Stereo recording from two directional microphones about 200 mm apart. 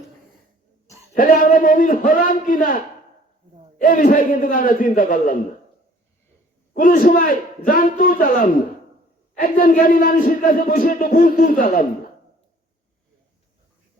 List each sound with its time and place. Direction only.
1.1 s speech: 40° left (ahead or behind)
6.7 s speech: 45° left (ahead or behind)